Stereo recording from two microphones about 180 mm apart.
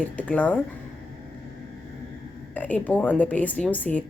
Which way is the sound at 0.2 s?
10° left (ahead or behind).